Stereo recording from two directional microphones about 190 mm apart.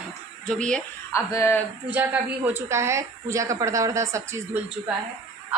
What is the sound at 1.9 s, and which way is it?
A woman's voice, 10° right (ahead or behind).